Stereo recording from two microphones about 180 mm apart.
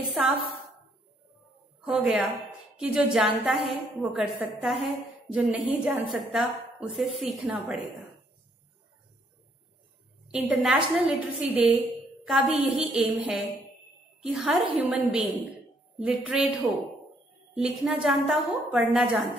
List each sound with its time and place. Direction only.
0.1 s a woman's voice: centre (ahead or behind)
1.9 s a woman's voice: 5° right (ahead or behind)
10.2 s a woman's voice: 5° right (ahead or behind)